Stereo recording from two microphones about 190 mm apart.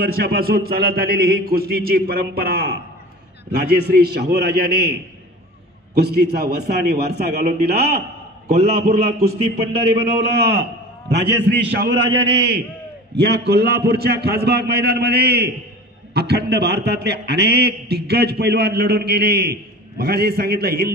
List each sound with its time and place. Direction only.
0.0 s a man's voice: 55° right (ahead or behind)
5.9 s a man's voice: 60° right (ahead or behind)
8.5 s a man's voice: 35° right (ahead or behind)
10.1 s a man's voice: 60° right (ahead or behind)